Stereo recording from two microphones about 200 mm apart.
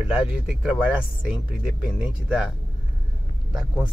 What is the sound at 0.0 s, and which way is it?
Speech, 5° right (ahead or behind).